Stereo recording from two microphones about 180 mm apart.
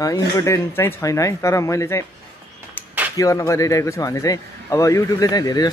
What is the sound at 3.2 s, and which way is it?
A man's voice, 15° left (ahead or behind).